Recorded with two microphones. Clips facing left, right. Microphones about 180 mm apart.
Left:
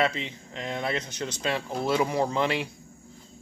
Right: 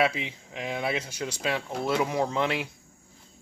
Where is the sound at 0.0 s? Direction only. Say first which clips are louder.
Right 1 dB; 5° right (ahead or behind).